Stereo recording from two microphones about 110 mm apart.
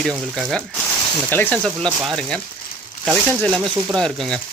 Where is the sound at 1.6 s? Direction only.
5° left (ahead or behind).